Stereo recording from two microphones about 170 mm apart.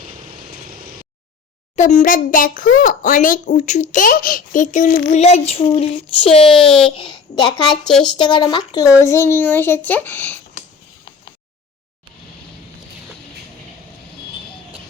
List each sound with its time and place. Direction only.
0.1 s vehicle: 55° right (ahead or behind)
1.7 s a child's voice: 45° left (ahead or behind); by 10.4 s 10° left (ahead or behind)